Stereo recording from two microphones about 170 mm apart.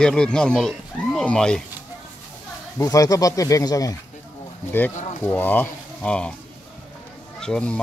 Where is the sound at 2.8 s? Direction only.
20° left (ahead or behind).